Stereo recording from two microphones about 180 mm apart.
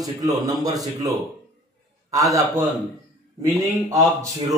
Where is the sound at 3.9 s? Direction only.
20° right (ahead or behind).